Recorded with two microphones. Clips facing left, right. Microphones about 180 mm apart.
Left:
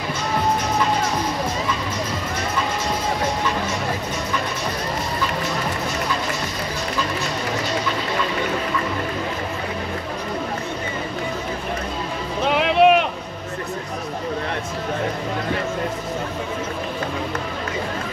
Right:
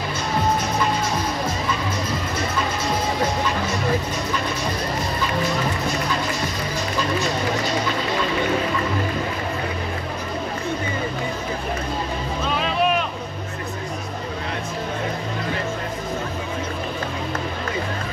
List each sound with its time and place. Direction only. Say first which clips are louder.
12.4 s vehicle: left 7 dB; 70° left (ahead or behind)